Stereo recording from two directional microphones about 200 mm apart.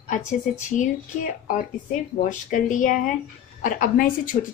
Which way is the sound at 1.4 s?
40° left (ahead or behind).